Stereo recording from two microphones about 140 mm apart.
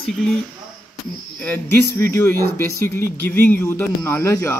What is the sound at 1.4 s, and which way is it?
Speech, 15° left (ahead or behind).